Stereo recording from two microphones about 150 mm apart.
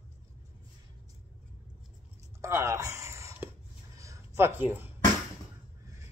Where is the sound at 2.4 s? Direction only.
20° right (ahead or behind).